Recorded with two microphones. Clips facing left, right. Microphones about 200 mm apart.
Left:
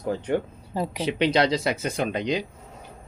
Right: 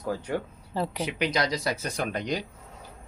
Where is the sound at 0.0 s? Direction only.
25° left (ahead or behind).